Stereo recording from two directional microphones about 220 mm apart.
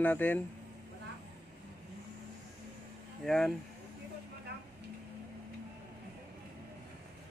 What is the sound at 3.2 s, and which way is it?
Speech, centre (ahead or behind).